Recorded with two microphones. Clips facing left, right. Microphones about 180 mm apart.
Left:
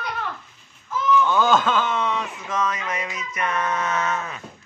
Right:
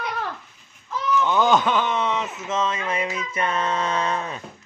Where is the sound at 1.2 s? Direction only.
20° right (ahead or behind).